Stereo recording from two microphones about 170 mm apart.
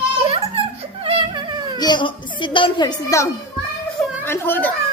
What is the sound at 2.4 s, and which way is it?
Speech, 30° left (ahead or behind).